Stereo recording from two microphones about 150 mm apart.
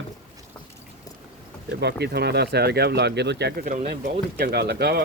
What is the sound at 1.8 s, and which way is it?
Speech, 90° right.